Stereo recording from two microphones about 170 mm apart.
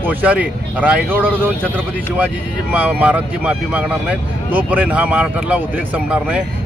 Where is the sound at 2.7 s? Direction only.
10° right (ahead or behind).